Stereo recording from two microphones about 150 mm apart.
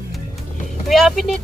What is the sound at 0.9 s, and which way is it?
Speech, centre (ahead or behind).